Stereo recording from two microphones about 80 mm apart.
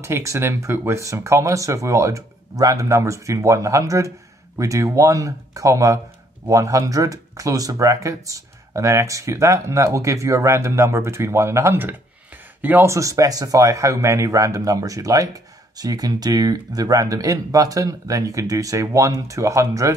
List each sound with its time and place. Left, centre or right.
0.0 s speech: right
12.8 s speech: right